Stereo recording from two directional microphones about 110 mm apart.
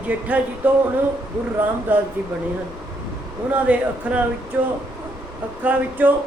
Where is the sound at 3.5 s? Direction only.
10° right (ahead or behind).